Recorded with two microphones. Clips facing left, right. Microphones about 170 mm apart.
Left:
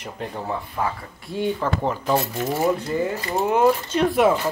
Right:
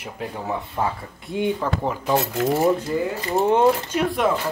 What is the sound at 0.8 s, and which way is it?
Speech, 25° right (ahead or behind).